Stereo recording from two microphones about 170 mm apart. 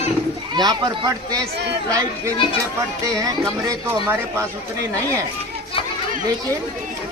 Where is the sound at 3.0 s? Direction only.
20° right (ahead or behind).